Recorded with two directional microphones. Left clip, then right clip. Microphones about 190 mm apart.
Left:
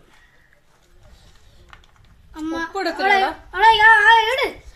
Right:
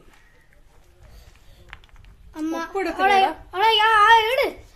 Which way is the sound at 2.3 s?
30° right (ahead or behind).